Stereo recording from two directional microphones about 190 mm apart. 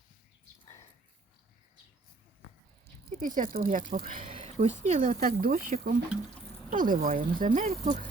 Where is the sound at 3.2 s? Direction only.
45° right (ahead or behind).